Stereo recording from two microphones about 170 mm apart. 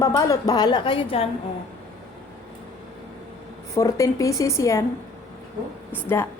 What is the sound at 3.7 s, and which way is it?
Speech, 20° left (ahead or behind).